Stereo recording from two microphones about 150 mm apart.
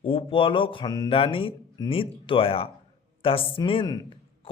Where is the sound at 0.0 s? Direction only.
35° left (ahead or behind).